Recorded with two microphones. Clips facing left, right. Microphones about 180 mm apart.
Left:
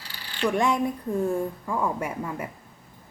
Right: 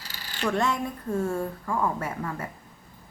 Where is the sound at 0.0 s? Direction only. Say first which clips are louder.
Even; 40° right (ahead or behind).